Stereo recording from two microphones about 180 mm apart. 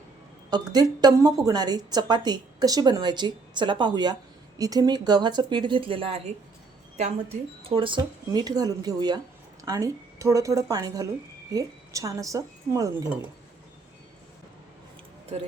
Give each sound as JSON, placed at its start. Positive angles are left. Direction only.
{"t": 0.5, "sound": "a woman's voice", "side_deg": -20}
{"t": 7.6, "sound": "a woman's voice", "side_deg": -30}